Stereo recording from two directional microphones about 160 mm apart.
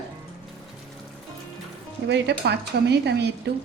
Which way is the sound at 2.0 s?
90° right.